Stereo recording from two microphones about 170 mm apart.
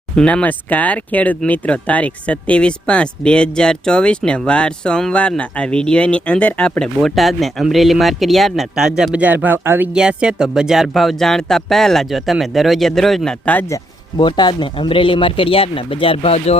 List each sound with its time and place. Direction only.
0.2 s speech: 5° left (ahead or behind)
14.2 s speech: 25° left (ahead or behind)